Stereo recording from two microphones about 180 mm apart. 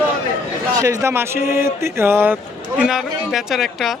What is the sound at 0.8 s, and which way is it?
A woman's voice, 15° right (ahead or behind).